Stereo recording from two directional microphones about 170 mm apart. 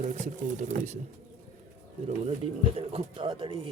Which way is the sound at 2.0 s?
40° right (ahead or behind).